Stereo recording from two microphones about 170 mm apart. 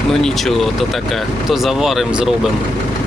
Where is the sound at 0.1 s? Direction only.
5° left (ahead or behind).